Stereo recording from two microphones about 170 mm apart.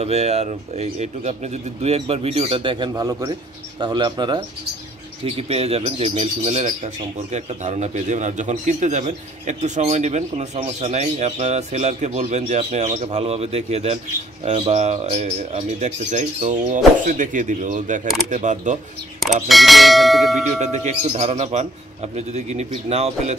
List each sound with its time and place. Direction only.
0.0 s speech: 40° right (ahead or behind)
5.2 s speech: 35° right (ahead or behind)
19.1 s speech: centre (ahead or behind)
20.6 s speech: 45° right (ahead or behind)